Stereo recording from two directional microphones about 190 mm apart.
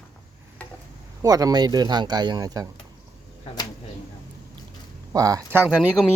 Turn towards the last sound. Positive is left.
turn(degrees=-5)  # may be behind; listen again after turning